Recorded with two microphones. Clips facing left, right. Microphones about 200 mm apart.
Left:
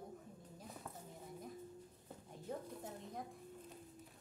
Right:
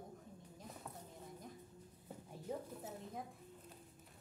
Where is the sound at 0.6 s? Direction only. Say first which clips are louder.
Even; centre (ahead or behind).